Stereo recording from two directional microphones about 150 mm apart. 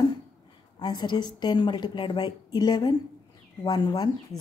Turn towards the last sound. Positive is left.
turn(degrees=30)  # may be behind; listen again after turning